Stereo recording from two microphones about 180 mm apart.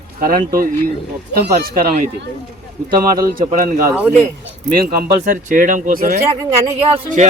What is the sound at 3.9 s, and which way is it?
Speech, 10° right (ahead or behind).